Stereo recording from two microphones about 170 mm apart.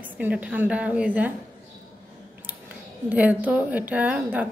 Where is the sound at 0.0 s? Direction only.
10° right (ahead or behind).